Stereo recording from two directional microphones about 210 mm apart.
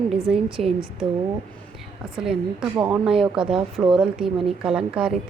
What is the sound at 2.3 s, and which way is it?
A woman's voice, 5° right (ahead or behind).